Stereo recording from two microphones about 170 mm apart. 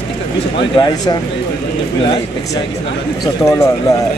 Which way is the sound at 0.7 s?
25° left (ahead or behind).